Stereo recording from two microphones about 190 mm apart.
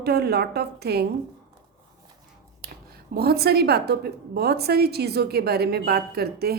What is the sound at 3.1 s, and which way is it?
A woman's voice, 55° right (ahead or behind).